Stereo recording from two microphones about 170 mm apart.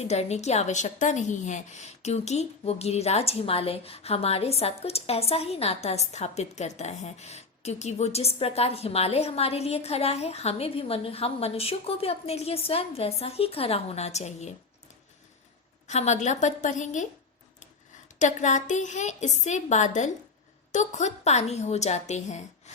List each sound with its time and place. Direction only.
0.0 s a woman's voice: 40° left (ahead or behind)
15.9 s a woman's voice: 40° left (ahead or behind)
18.2 s a woman's voice: 45° left (ahead or behind)